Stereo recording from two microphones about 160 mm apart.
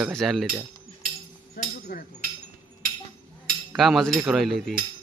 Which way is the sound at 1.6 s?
65° left (ahead or behind).